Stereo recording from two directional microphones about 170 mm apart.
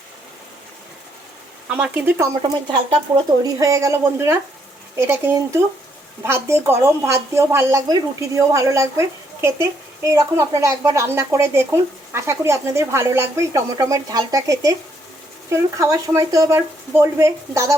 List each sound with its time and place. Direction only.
1.7 s speech: 10° right (ahead or behind)
3.4 s speech: 20° right (ahead or behind)